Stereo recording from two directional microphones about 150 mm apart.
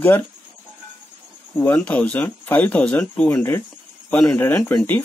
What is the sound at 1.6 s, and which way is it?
Speech, 10° left (ahead or behind).